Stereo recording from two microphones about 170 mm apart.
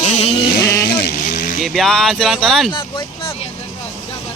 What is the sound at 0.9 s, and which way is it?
Vehicle, 70° left (ahead or behind).